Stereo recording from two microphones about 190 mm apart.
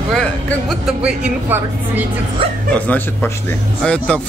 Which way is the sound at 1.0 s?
10° right (ahead or behind).